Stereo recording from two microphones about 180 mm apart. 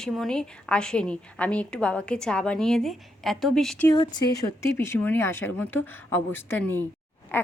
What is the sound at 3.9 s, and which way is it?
A woman's voice, 20° left (ahead or behind).